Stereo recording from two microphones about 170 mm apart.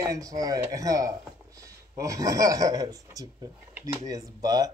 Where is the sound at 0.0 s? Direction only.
20° right (ahead or behind).